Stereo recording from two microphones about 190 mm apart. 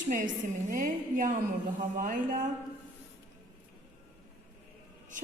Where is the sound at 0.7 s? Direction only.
45° right (ahead or behind).